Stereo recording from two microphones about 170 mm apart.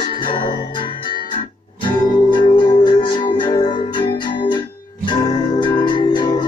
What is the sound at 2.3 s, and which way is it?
Music, 25° left (ahead or behind).